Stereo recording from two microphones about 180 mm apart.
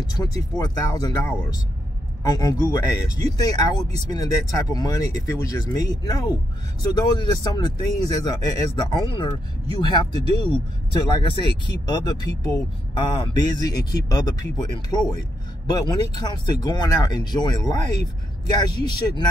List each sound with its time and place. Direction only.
0.0 s speech: 20° left (ahead or behind)